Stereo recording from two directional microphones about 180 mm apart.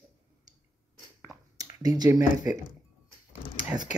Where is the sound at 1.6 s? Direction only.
20° right (ahead or behind).